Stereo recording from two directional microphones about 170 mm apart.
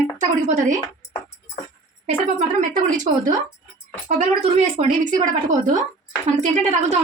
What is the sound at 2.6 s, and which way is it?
A woman's voice, 50° right (ahead or behind).